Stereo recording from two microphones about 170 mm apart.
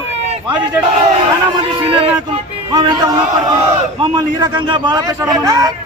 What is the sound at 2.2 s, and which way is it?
A man's voice, 30° right (ahead or behind).